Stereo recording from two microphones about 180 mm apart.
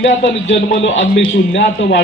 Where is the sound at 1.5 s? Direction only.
70° left (ahead or behind).